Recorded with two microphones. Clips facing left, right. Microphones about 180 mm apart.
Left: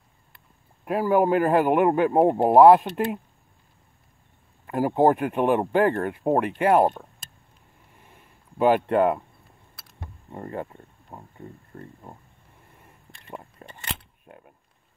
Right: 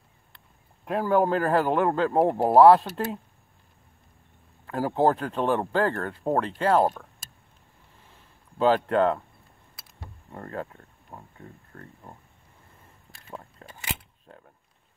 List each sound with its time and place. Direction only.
0.8 s speech: 10° left (ahead or behind)
4.6 s speech: 15° left (ahead or behind)
8.1 s a sound: 15° left (ahead or behind)
10.3 s speech: 15° left (ahead or behind)
13.3 s biting: 10° left (ahead or behind)
14.2 s creak: 15° left (ahead or behind)